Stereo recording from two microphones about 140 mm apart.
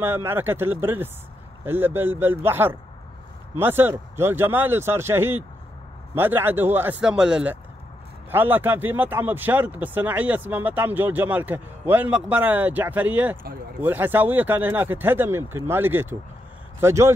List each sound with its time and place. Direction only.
0.0 s a man's voice: 15° right (ahead or behind)